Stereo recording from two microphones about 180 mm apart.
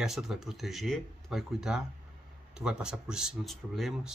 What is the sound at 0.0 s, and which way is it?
Speech, centre (ahead or behind).